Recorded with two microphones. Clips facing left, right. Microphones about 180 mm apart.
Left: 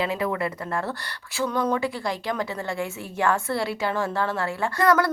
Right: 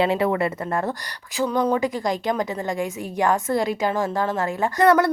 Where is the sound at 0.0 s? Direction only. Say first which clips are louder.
Right 5 dB; 25° right (ahead or behind).